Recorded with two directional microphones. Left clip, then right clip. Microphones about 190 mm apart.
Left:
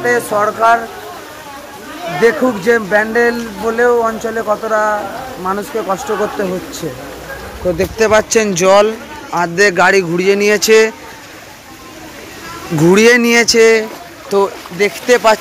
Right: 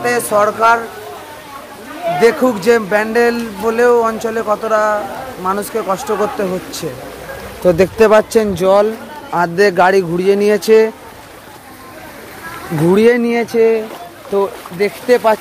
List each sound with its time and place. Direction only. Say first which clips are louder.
0.0 s speech: even; 5° right (ahead or behind)
2.2 s speech: even; 5° right (ahead or behind)
7.6 s speech: right 5 dB; 60° right (ahead or behind)
8.2 s speech: left 1 dB; 10° right (ahead or behind)
9.3 s speech: even; 25° right (ahead or behind)
12.8 s speech: left 3 dB; centre (ahead or behind)